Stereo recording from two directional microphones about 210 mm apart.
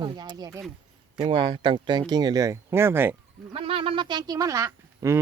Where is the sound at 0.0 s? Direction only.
20° right (ahead or behind).